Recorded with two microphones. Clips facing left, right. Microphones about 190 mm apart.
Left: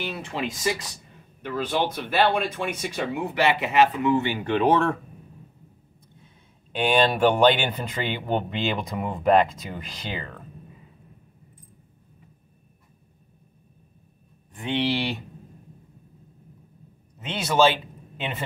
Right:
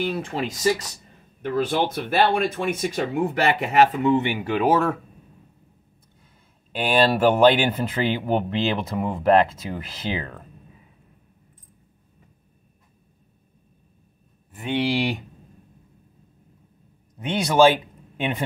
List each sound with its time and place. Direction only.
0.0 s speech: 45° right (ahead or behind)
4.0 s speech: 20° right (ahead or behind)
6.2 s speech: 5° right (ahead or behind)
14.5 s speech: 10° right (ahead or behind)
17.3 s speech: 10° right (ahead or behind)